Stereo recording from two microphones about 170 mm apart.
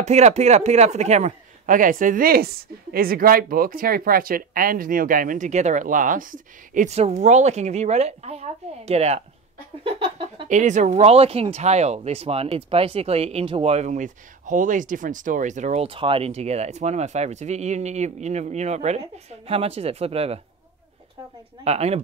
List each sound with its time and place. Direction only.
0.0 s a man's voice: 40° right (ahead or behind)
9.8 s a sound: 30° right (ahead or behind)
10.5 s speech: 45° right (ahead or behind)
21.6 s speech: 40° right (ahead or behind)